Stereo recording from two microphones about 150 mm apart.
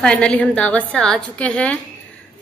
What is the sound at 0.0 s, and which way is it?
A woman's voice, 5° left (ahead or behind).